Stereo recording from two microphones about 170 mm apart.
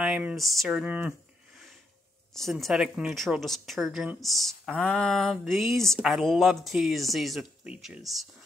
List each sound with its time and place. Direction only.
0.0 s speech: 5° right (ahead or behind)
2.3 s speech: centre (ahead or behind)